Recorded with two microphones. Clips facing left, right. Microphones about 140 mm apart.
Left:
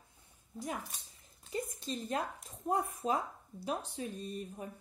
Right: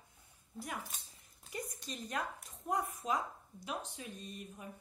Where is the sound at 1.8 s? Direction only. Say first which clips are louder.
Left 2 dB; 25° left (ahead or behind).